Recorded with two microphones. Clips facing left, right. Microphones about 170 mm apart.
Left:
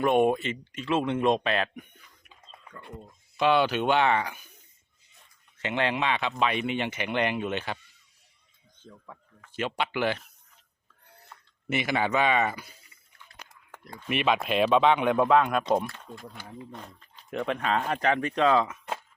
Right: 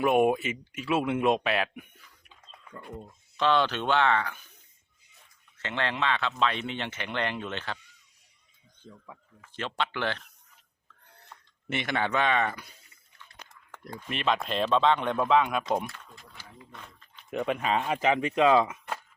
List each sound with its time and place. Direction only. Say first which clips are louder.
0.0 s speech: even; 5° right (ahead or behind)
3.3 s speech: left 2 dB; 10° left (ahead or behind)
5.5 s speech: left 3 dB; 15° left (ahead or behind)
9.5 s speech: left 2 dB; 10° left (ahead or behind)
11.7 s speech: left 2 dB; 5° left (ahead or behind)
13.4 s a sound: left 1 dB; 10° left (ahead or behind)
14.1 s speech: left 3 dB; 10° left (ahead or behind)
16.1 s speech: left 8 dB; 55° left (ahead or behind)
16.7 s speech: left 5 dB; 40° left (ahead or behind)
17.3 s speech: even; 5° right (ahead or behind)